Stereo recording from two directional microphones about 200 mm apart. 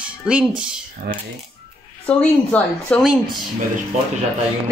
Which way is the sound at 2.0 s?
5° left (ahead or behind).